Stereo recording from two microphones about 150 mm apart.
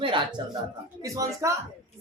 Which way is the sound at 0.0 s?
35° right (ahead or behind).